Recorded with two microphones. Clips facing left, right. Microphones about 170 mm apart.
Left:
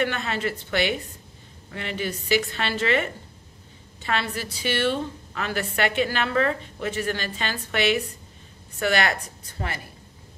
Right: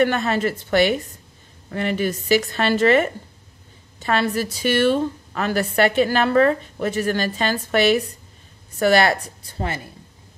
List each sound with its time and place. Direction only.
0.0 s a woman's voice: 45° right (ahead or behind)